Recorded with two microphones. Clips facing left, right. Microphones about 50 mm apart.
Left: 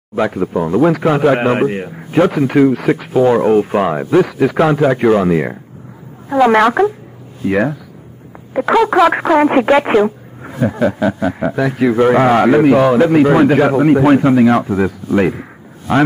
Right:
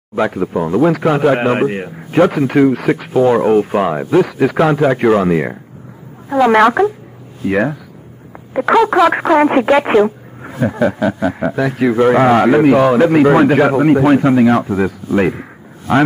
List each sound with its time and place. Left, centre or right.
0.1 s a man's voice: centre